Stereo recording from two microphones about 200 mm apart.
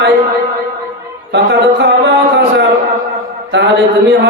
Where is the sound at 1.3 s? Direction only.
60° right (ahead or behind).